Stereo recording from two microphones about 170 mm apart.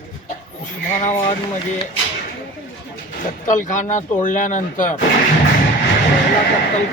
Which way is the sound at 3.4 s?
50° left (ahead or behind).